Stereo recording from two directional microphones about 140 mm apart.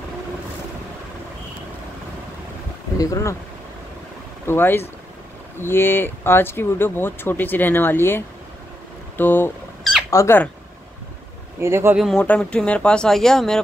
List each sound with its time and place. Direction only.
3.0 s speech: 25° left (ahead or behind)
4.5 s speech: 15° left (ahead or behind)
11.6 s speech: 15° right (ahead or behind)
12.0 s speech: 5° left (ahead or behind)